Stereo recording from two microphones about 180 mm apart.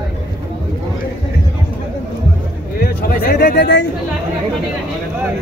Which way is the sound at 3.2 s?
65° left (ahead or behind).